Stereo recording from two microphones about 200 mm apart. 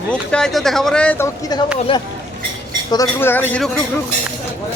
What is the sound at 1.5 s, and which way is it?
Speech, 20° left (ahead or behind).